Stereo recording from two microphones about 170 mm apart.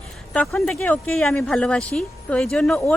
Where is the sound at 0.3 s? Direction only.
5° left (ahead or behind).